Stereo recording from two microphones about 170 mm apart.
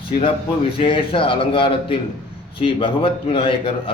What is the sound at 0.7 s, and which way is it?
A man's voice, 30° left (ahead or behind).